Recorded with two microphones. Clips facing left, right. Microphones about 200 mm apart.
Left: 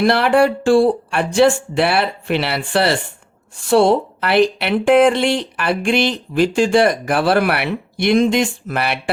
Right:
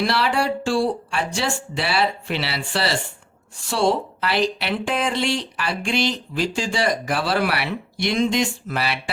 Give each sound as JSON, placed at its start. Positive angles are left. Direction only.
{"t": 0.0, "sound": "speech", "side_deg": 55}